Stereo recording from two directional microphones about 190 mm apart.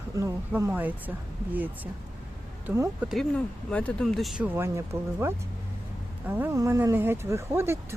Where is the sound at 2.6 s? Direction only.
15° right (ahead or behind).